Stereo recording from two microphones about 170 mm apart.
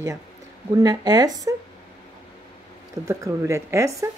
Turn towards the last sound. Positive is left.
turn(degrees=-20)  # may be behind; listen again after turning